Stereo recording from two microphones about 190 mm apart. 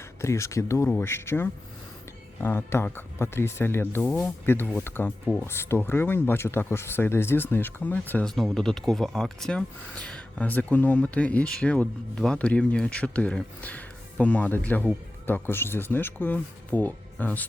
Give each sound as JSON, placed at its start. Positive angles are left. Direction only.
{"t": 0.2, "sound": "speech", "side_deg": 15}